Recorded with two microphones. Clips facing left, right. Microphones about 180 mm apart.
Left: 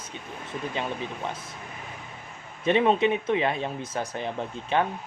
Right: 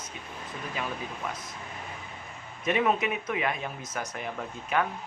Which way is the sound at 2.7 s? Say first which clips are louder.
Left 5 dB; 30° left (ahead or behind).